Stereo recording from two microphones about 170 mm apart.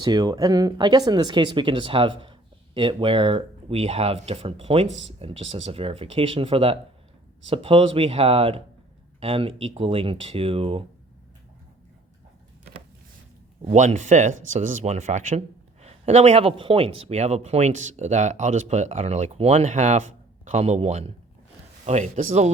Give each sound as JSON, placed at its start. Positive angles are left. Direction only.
{"t": 0.0, "sound": "speech", "side_deg": -25}
{"t": 13.7, "sound": "speech", "side_deg": -45}